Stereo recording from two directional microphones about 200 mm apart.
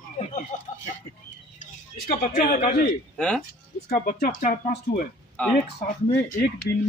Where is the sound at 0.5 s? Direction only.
40° left (ahead or behind).